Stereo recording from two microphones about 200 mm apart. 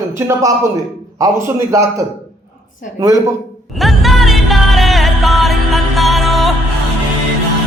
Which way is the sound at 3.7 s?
Centre (ahead or behind).